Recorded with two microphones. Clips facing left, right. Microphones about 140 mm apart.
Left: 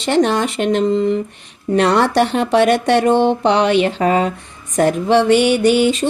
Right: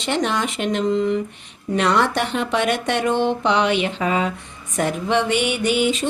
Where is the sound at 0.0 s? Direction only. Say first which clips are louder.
Left 7 dB; 35° left (ahead or behind).